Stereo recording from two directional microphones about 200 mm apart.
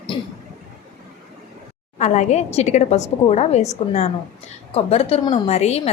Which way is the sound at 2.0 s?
35° left (ahead or behind).